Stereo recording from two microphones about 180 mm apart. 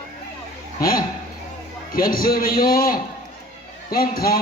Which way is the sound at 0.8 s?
55° left (ahead or behind).